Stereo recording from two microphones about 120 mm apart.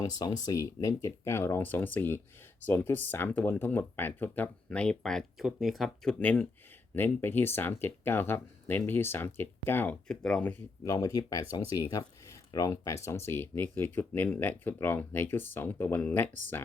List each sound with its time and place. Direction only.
0.0 s speech: 30° left (ahead or behind)
10.1 s speech: 5° left (ahead or behind)
10.8 s speech: 30° left (ahead or behind)